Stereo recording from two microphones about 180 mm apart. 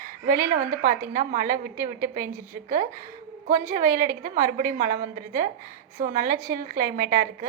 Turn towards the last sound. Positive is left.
turn(degrees=-50)  # may be behind; listen again after turning